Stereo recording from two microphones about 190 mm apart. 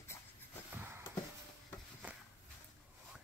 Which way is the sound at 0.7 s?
10° right (ahead or behind).